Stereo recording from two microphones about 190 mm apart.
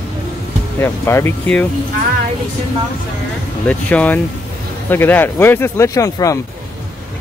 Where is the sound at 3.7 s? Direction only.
10° left (ahead or behind).